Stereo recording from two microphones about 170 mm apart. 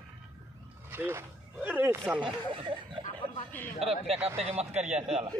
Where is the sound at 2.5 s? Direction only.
30° right (ahead or behind).